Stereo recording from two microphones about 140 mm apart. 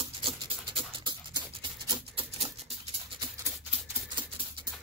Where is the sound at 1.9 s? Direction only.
45° right (ahead or behind).